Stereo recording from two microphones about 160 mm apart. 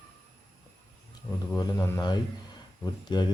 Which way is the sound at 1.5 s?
15° left (ahead or behind).